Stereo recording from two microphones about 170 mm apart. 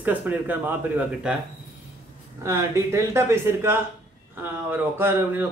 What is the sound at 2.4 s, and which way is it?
Speech, 15° right (ahead or behind).